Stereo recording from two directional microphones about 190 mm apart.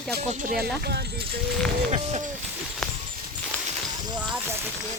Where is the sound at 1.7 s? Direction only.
35° right (ahead or behind).